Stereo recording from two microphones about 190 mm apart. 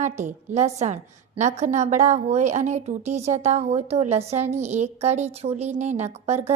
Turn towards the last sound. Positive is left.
turn(degrees=-35)  # may be behind; listen again after turning